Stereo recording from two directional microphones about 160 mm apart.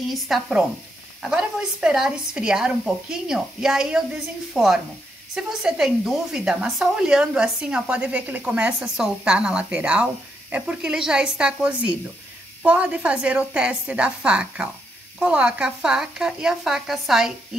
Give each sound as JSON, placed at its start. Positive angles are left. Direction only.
{"t": 0.1, "sound": "a woman's voice", "side_deg": 0}